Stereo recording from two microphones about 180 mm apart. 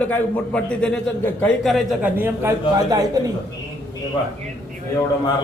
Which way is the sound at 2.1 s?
15° right (ahead or behind).